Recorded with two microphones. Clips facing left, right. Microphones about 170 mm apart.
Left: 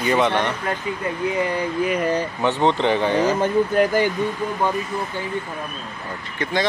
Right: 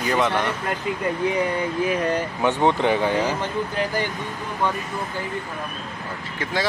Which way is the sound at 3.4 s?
50° left (ahead or behind).